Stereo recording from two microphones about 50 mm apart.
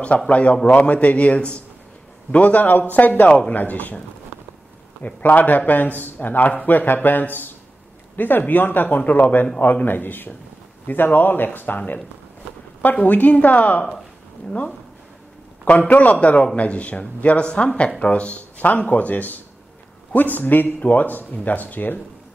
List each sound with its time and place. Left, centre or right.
0.3 s speech: left
5.0 s speech: left
15.9 s speech: left